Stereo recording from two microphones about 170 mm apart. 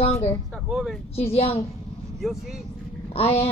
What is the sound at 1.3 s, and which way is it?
Speech, 40° left (ahead or behind).